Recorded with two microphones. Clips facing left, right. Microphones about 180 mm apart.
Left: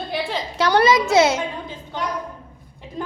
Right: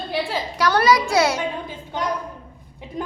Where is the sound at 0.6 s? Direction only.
25° left (ahead or behind).